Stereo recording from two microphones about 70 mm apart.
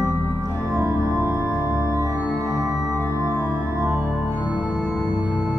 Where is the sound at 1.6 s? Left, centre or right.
Left.